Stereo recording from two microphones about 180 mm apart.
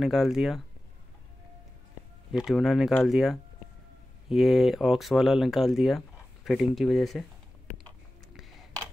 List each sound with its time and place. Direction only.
0.0 s speech: centre (ahead or behind)
2.3 s speech: centre (ahead or behind)